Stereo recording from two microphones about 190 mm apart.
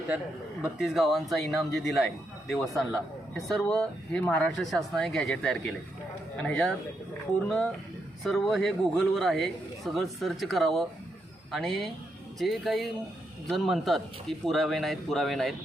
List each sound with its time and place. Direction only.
0.6 s speech: 5° right (ahead or behind)